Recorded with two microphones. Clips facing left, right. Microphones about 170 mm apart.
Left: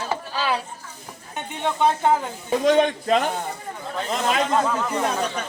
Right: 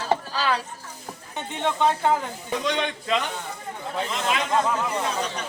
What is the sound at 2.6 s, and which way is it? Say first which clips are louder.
A man's voice: left 9 dB; 45° left (ahead or behind).